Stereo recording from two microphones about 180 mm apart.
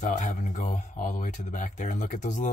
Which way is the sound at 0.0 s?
40° left (ahead or behind).